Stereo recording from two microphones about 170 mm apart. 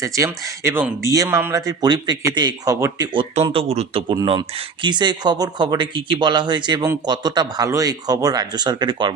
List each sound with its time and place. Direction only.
0.0 s a man's voice: 20° right (ahead or behind)